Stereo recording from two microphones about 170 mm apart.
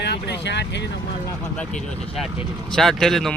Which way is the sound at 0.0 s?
85° left.